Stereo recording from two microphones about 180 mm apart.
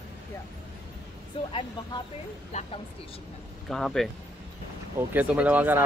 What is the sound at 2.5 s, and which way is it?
Speech, 35° left (ahead or behind).